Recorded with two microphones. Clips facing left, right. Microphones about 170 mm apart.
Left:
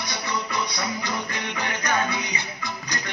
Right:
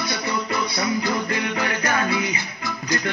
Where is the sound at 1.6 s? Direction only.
20° left (ahead or behind).